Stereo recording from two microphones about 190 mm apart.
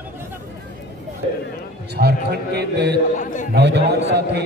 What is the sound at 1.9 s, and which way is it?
A man's voice, 55° right (ahead or behind).